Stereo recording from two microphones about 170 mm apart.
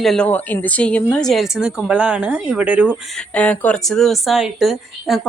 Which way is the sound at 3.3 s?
10° left (ahead or behind).